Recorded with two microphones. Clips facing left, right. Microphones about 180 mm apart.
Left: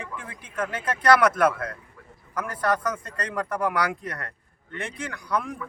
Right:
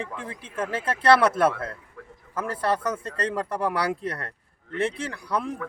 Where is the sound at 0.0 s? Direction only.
30° right (ahead or behind).